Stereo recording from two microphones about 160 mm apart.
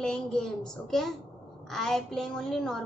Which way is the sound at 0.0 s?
5° left (ahead or behind).